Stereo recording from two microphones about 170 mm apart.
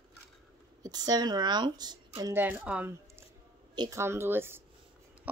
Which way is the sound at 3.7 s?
20° right (ahead or behind).